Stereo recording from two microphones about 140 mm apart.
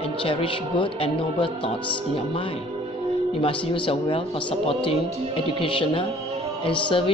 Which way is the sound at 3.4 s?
40° left (ahead or behind).